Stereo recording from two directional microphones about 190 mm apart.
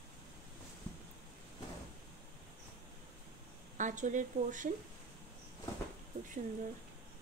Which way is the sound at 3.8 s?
40° right (ahead or behind).